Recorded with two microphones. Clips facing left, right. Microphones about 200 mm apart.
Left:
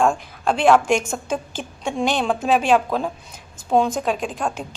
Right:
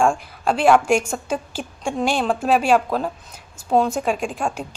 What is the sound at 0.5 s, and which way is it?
A woman's voice, 5° right (ahead or behind).